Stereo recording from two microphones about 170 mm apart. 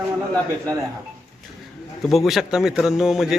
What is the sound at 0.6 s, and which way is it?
Speech, 20° right (ahead or behind).